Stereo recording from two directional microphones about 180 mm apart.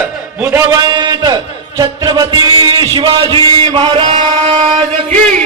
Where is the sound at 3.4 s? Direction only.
30° right (ahead or behind).